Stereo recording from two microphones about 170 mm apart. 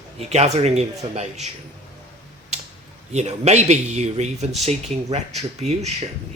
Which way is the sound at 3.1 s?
40° right (ahead or behind).